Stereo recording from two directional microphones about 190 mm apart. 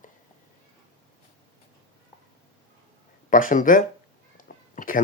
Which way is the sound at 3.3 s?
45° left (ahead or behind).